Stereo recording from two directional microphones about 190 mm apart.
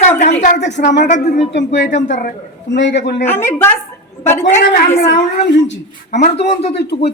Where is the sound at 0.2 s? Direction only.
40° left (ahead or behind).